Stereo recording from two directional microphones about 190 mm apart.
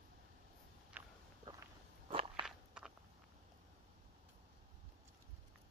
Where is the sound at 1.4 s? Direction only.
25° right (ahead or behind).